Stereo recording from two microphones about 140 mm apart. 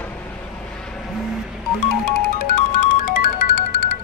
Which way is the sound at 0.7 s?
5° left (ahead or behind).